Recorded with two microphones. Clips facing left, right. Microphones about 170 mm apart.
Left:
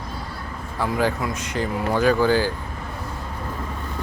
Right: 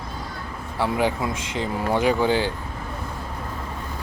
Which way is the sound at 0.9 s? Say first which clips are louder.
Left 1 dB; 20° right (ahead or behind).